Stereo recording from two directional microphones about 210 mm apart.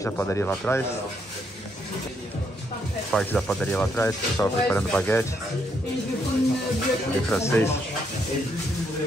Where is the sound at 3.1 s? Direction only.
5° left (ahead or behind).